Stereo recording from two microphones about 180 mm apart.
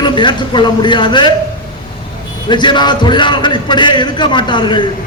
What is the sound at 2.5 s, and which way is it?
A man's voice, 25° left (ahead or behind).